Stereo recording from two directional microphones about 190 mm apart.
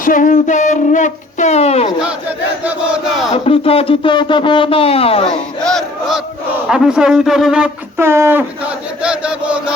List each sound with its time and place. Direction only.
0.0 s speech: 45° left (ahead or behind)
2.6 s speech: 5° right (ahead or behind)
3.3 s speech: 30° left (ahead or behind)
5.2 s battle cry: 5° left (ahead or behind)
6.7 s speech: 5° right (ahead or behind)
9.0 s chant: 5° right (ahead or behind)